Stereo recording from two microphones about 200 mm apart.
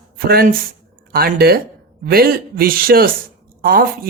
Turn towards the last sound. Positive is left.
turn(degrees=-50)  # may be behind; listen again after turning